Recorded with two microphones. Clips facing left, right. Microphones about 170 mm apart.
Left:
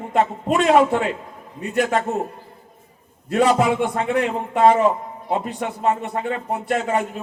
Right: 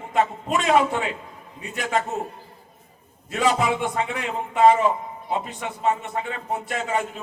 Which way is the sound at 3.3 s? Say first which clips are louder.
Left 5 dB; 55° left (ahead or behind).